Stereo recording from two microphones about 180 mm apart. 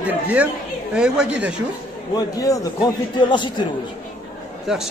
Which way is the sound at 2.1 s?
20° left (ahead or behind).